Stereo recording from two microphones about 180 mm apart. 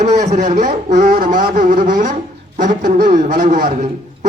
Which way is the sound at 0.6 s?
40° right (ahead or behind).